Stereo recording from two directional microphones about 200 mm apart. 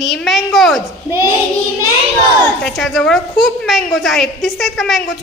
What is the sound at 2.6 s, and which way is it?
A child's voice, centre (ahead or behind).